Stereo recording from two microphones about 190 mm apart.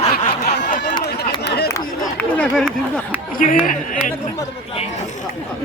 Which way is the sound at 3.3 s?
45° left (ahead or behind).